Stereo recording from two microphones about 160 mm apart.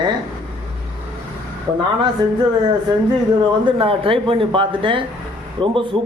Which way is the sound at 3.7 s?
35° right (ahead or behind).